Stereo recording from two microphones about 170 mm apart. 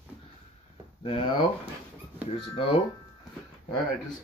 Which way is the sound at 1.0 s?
30° left (ahead or behind).